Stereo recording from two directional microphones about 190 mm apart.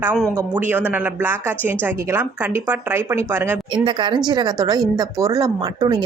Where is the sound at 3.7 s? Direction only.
25° right (ahead or behind).